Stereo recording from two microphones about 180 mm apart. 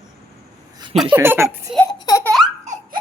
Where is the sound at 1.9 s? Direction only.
20° left (ahead or behind).